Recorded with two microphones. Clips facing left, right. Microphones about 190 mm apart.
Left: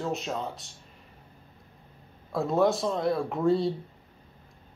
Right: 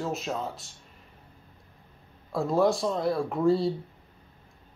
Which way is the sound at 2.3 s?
Centre (ahead or behind).